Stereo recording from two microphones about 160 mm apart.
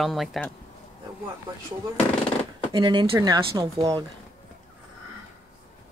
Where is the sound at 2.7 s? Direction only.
30° right (ahead or behind).